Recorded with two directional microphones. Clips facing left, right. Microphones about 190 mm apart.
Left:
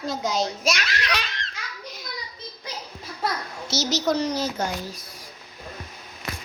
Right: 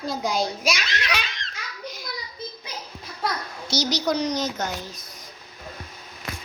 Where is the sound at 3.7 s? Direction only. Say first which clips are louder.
Even; 5° left (ahead or behind).